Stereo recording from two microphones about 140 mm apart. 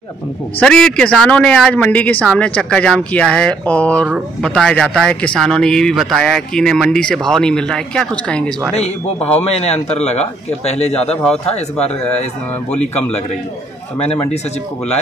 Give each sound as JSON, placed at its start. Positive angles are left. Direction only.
{"t": 0.6, "sound": "speech", "side_deg": 5}
{"t": 9.4, "sound": "speech", "side_deg": 50}